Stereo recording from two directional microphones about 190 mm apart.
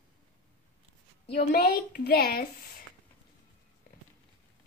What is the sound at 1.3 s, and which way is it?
A woman's voice, 55° left (ahead or behind).